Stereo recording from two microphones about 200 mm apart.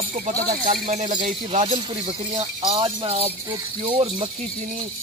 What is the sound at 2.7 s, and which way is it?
Speech, 30° right (ahead or behind).